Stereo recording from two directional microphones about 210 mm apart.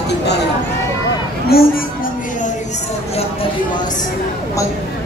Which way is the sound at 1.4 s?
45° left (ahead or behind).